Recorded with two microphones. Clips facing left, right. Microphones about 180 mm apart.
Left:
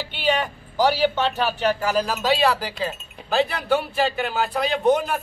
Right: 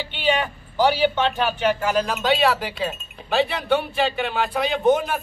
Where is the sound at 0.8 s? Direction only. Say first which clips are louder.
Right 1 dB; 40° left (ahead or behind).